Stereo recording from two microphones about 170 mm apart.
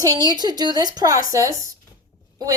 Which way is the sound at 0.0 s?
20° right (ahead or behind).